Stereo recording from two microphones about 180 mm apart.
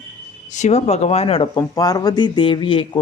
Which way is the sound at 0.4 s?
40° left (ahead or behind).